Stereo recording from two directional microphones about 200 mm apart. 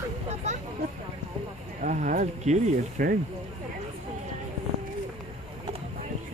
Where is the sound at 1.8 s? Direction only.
40° right (ahead or behind).